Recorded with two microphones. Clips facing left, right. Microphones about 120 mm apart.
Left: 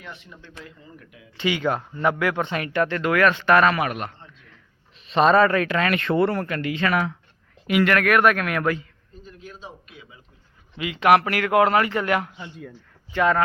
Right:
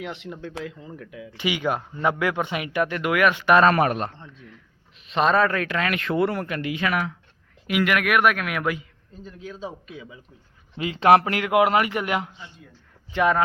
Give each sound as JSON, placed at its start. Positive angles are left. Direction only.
{"t": 0.0, "sound": "speech", "side_deg": -90}
{"t": 1.4, "sound": "speech", "side_deg": -15}
{"t": 3.7, "sound": "a man's voice", "side_deg": -40}
{"t": 5.0, "sound": "speech", "side_deg": 0}
{"t": 10.8, "sound": "a man's voice", "side_deg": -35}